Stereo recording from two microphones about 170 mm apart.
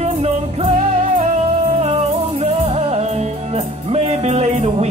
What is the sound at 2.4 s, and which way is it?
Music, 35° right (ahead or behind).